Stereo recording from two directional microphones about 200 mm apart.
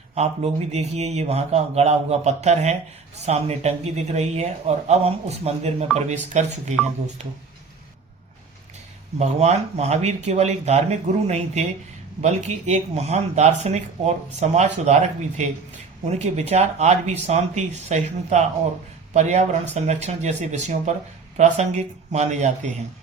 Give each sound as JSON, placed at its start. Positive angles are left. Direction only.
{"t": 0.1, "sound": "speech", "side_deg": -30}
{"t": 9.1, "sound": "speech", "side_deg": -35}